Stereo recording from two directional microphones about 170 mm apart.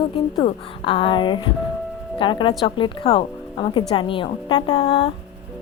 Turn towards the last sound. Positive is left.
turn(degrees=30)  # may be behind; listen again after turning